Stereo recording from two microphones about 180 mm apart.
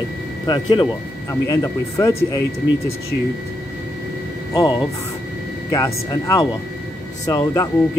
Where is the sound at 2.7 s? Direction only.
90° left.